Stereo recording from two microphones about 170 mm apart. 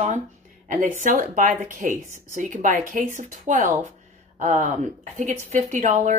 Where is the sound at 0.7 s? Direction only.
45° right (ahead or behind).